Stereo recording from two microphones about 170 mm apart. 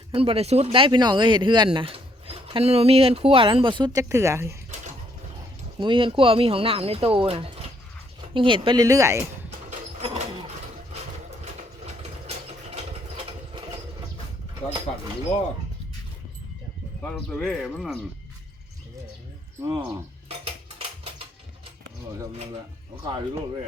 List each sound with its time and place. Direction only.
0.1 s speech: 35° right (ahead or behind); by 4.5 s 15° right (ahead or behind)
5.8 s speech: 30° right (ahead or behind)
9.6 s sliding door: 40° right (ahead or behind)
12.7 s mechanisms: 35° right (ahead or behind)
14.5 s speech: 20° right (ahead or behind)
17.2 s speech: 5° left (ahead or behind)
19.8 s dishes: 35° right (ahead or behind)
23.0 s speech: 35° right (ahead or behind)